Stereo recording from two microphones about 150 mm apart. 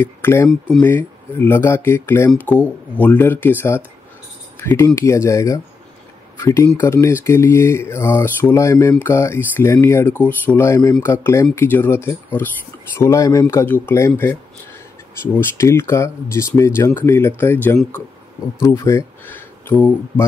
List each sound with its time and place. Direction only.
0.0 s speech: 15° left (ahead or behind)
15.5 s speech: 15° left (ahead or behind)